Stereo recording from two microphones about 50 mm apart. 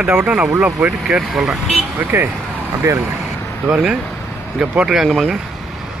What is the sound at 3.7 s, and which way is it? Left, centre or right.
Speech, right.